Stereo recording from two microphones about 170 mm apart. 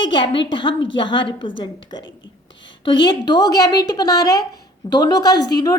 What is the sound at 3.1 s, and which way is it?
A woman's voice, 25° left (ahead or behind).